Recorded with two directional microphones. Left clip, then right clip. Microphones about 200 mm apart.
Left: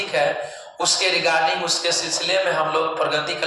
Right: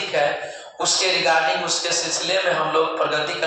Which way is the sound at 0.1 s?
15° left (ahead or behind).